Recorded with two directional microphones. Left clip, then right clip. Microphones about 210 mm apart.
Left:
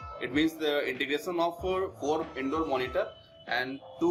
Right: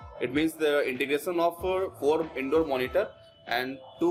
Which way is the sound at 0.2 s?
35° right (ahead or behind).